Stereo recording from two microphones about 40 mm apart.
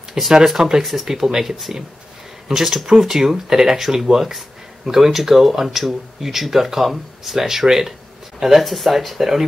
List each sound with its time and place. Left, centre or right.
0.1 s speech: centre